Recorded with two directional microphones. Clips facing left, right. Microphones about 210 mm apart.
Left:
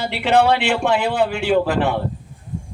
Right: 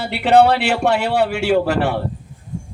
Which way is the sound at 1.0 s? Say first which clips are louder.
Right 2 dB; 70° right (ahead or behind).